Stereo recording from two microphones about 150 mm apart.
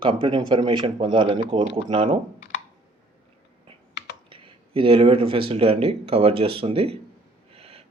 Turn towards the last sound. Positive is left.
turn(degrees=-40)  # may be behind; listen again after turning